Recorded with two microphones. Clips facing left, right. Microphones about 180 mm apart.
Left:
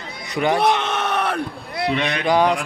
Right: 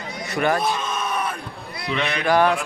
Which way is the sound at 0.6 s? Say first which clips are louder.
Left 5 dB; 75° left (ahead or behind).